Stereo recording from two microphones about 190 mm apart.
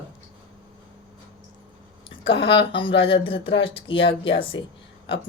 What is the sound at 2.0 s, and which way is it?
Speech, 30° left (ahead or behind).